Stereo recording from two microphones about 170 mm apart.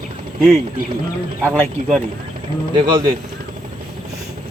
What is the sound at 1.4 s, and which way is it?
Speech, 10° left (ahead or behind).